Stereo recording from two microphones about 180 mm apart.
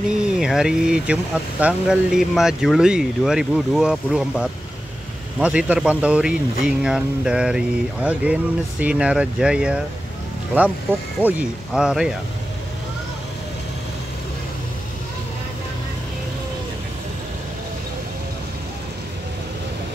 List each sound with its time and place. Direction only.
0.4 s a man's voice: 5° right (ahead or behind)
11.1 s speech: 10° right (ahead or behind)